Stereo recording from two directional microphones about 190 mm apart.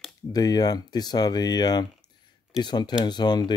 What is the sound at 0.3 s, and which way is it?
Speech, 20° left (ahead or behind).